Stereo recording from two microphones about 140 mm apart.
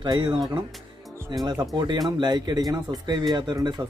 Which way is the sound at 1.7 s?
30° right (ahead or behind).